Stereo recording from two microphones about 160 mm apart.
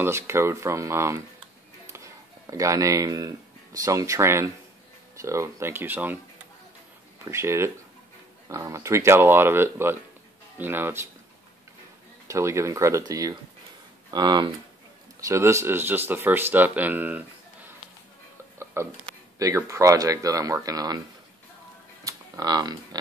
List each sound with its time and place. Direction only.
0.0 s speech: 15° right (ahead or behind)
7.2 s speech: 15° right (ahead or behind)
12.3 s speech: 20° right (ahead or behind)
15.1 s speech: 20° right (ahead or behind)
18.6 s a sound: 15° right (ahead or behind)
19.3 s speech: 20° right (ahead or behind)
22.0 s a sound: 20° right (ahead or behind)